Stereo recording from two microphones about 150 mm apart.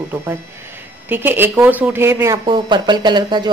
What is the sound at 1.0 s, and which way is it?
Speech, 15° right (ahead or behind).